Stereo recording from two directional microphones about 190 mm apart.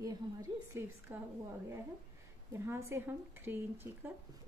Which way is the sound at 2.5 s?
15° right (ahead or behind).